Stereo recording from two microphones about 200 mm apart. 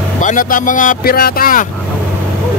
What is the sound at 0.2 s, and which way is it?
Speech, 40° left (ahead or behind).